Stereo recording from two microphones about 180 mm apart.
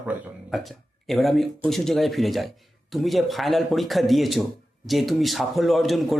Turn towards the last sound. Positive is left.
turn(degrees=0)  # may be behind; listen again after turning